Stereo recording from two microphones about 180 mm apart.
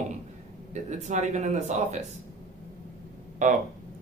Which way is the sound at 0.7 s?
40° right (ahead or behind).